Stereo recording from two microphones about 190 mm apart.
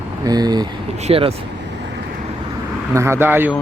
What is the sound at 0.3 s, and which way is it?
Speech, 20° right (ahead or behind).